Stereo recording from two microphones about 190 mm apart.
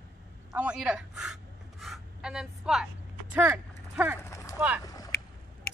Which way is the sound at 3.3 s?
10° right (ahead or behind).